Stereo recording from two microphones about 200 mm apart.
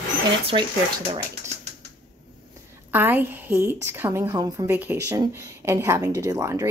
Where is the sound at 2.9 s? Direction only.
10° right (ahead or behind).